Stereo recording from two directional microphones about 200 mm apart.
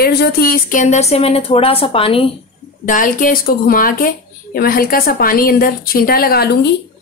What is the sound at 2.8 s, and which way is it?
A woman's voice, 40° left (ahead or behind).